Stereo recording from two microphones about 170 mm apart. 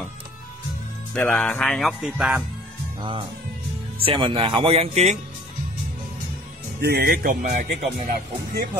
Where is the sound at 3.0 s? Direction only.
30° right (ahead or behind).